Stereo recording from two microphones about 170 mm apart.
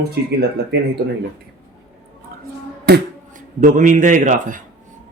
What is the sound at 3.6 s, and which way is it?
A man's voice, 50° right (ahead or behind).